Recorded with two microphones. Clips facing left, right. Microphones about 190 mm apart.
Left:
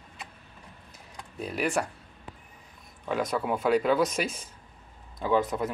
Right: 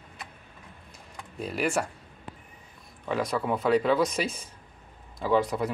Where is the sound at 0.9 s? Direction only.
Centre (ahead or behind).